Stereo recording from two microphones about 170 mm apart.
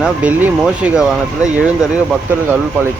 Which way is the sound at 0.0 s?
10° right (ahead or behind).